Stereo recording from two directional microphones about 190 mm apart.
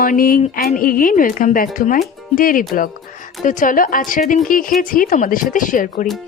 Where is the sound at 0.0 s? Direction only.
45° left (ahead or behind).